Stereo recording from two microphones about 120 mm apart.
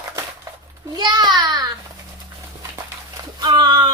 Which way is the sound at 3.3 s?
35° right (ahead or behind).